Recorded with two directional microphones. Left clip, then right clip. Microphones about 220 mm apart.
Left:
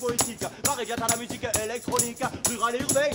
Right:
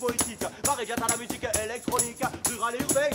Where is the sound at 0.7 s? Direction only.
Centre (ahead or behind).